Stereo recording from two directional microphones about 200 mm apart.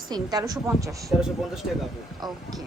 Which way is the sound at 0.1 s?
20° right (ahead or behind).